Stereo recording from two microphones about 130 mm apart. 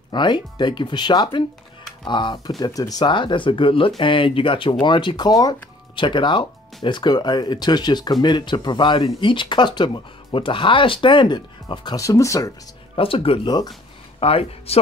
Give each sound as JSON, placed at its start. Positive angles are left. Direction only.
{"t": 0.1, "sound": "speech", "side_deg": 35}
{"t": 12.9, "sound": "speech", "side_deg": 45}